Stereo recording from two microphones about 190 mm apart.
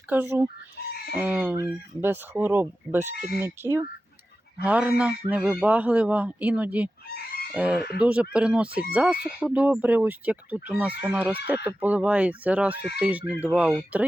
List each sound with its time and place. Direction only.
0.1 s speech: 10° right (ahead or behind)
12.7 s speech: 60° left (ahead or behind)
13.0 s speech: 10° right (ahead or behind)